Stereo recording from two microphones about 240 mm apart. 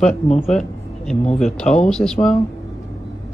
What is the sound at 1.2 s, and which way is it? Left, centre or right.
Speech, left.